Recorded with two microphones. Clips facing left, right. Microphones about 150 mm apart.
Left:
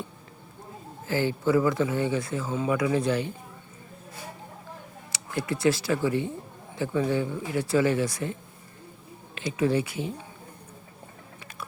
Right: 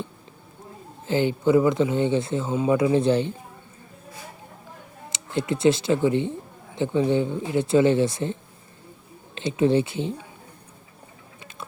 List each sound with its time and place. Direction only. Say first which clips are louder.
1.0 s speech: right 4 dB; 20° right (ahead or behind)
5.1 s speech: right 4 dB; 20° right (ahead or behind)